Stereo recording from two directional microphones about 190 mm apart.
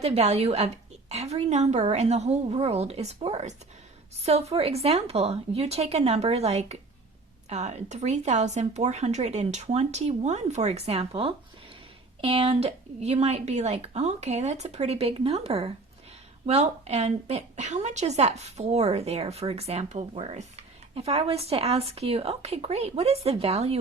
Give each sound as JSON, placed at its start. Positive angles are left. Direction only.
{"t": 0.0, "sound": "a woman's voice", "side_deg": -35}